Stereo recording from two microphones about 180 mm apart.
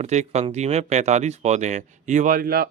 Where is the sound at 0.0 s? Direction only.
40° right (ahead or behind).